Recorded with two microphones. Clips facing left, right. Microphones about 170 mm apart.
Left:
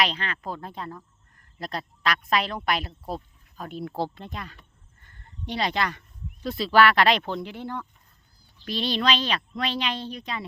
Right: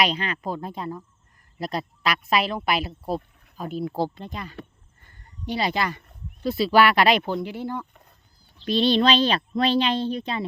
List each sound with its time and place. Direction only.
0.0 s a woman's voice: 10° right (ahead or behind)
8.6 s speech: 25° right (ahead or behind)